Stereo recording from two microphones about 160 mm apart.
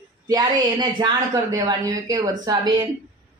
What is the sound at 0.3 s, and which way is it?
Speech, 25° right (ahead or behind).